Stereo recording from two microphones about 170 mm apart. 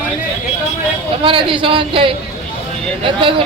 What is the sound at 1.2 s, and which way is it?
A man's voice, 30° right (ahead or behind).